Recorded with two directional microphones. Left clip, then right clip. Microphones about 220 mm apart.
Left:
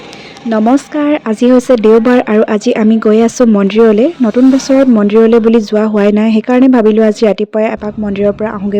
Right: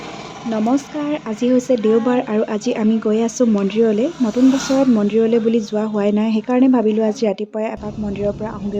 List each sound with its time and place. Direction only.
0.5 s speech: 35° left (ahead or behind)